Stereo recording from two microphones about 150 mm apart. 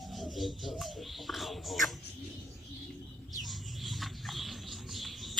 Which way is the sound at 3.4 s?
Centre (ahead or behind).